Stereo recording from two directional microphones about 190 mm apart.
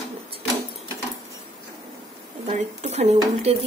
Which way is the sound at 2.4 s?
35° right (ahead or behind).